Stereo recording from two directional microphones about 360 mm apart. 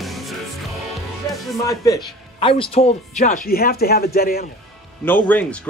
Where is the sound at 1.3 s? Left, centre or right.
Centre; by 4.4 s left.